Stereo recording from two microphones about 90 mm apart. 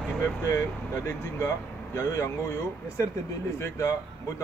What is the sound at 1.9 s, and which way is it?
Speech, 35° left (ahead or behind).